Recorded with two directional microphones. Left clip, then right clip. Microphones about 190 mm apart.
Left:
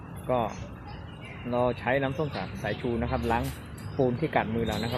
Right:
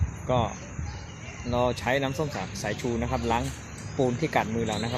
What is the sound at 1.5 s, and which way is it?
Speech, 10° right (ahead or behind).